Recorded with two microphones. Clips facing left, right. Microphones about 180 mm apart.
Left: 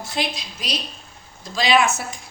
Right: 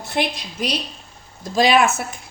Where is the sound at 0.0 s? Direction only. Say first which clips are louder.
Right 4 dB; 60° right (ahead or behind).